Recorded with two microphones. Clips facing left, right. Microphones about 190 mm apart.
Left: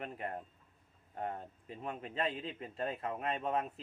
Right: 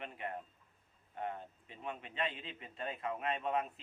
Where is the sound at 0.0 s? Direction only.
40° left (ahead or behind).